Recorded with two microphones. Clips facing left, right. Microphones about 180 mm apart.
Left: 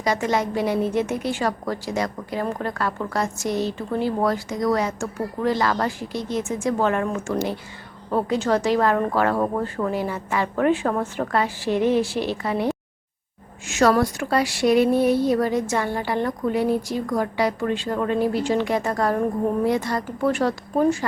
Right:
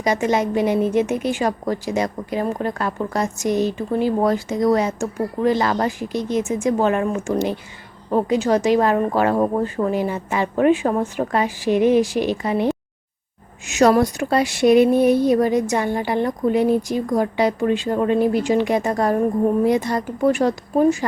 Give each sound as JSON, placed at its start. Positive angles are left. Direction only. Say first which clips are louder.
{"t": 0.0, "sound": "a woman's voice", "louder": "right 3 dB", "side_deg": -20}